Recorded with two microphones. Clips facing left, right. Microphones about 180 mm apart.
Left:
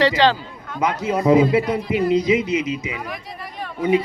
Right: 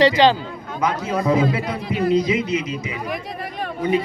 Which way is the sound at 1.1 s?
20° left (ahead or behind).